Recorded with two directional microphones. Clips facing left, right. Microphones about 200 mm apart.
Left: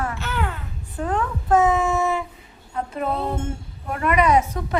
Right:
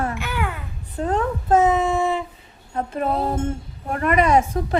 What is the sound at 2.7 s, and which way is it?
A woman's voice, 40° right (ahead or behind).